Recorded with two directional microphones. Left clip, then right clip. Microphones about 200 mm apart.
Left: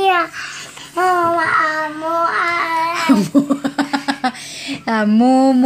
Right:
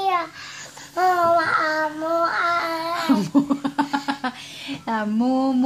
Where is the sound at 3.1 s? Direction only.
5° left (ahead or behind).